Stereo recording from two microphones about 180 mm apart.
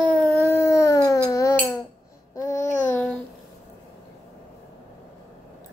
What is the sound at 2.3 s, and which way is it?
Child singing, 15° left (ahead or behind).